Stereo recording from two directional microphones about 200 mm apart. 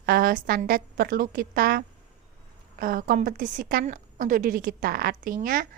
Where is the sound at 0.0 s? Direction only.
45° right (ahead or behind).